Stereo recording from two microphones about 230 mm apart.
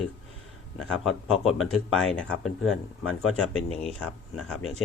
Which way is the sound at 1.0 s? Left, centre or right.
Centre.